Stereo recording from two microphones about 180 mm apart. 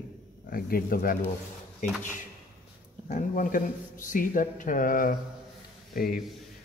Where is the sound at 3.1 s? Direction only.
45° left (ahead or behind).